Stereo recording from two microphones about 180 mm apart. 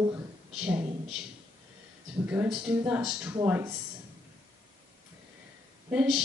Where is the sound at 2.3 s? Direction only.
5° right (ahead or behind).